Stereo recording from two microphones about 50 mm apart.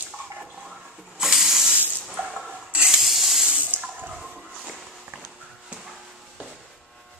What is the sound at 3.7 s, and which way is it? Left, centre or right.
Water, right.